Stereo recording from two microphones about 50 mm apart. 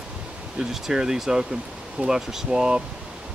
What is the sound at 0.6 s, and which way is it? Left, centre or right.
Speech, centre.